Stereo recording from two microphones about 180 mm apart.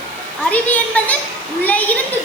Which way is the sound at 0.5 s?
10° left (ahead or behind).